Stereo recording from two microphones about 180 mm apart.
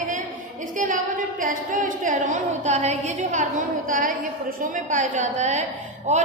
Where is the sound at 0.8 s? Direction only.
45° right (ahead or behind).